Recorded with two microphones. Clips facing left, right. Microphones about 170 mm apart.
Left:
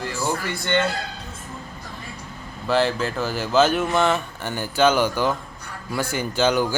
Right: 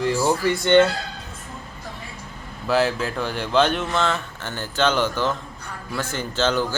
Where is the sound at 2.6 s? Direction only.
Centre (ahead or behind).